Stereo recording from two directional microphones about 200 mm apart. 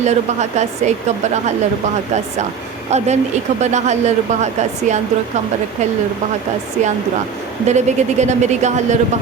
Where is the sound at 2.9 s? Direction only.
35° right (ahead or behind).